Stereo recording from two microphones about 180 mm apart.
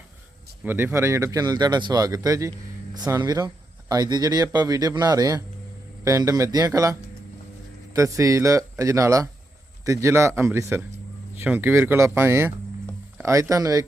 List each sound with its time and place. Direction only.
0.6 s speech: 10° right (ahead or behind)
7.9 s speech: 15° right (ahead or behind)